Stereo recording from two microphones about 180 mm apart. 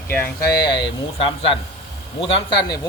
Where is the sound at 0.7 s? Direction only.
25° left (ahead or behind).